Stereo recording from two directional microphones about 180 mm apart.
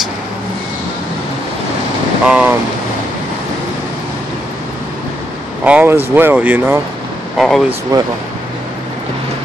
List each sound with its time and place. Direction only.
2.2 s speech: 5° right (ahead or behind)
5.6 s speech: 10° right (ahead or behind)
7.3 s speech: centre (ahead or behind)
7.9 s speech: 20° right (ahead or behind)